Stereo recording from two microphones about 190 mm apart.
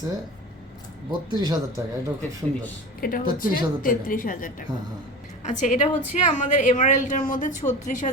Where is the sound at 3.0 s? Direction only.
50° left (ahead or behind).